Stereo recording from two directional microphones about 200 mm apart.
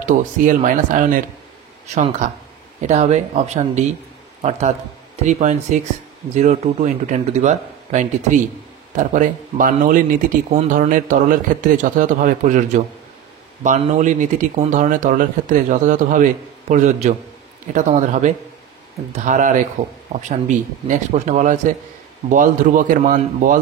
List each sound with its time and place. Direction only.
0.0 s speech: 40° right (ahead or behind)